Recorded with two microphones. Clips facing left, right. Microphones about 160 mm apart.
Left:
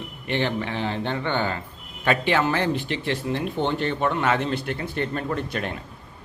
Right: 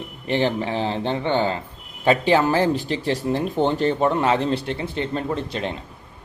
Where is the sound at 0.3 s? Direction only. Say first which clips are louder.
Right 4 dB; 35° right (ahead or behind).